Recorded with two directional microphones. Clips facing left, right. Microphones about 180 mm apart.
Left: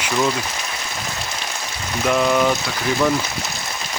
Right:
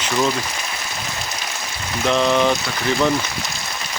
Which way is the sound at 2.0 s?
5° left (ahead or behind).